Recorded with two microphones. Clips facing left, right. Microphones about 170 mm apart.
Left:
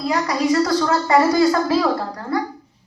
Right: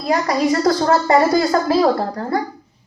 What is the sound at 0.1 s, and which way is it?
A child's voice, 45° right (ahead or behind).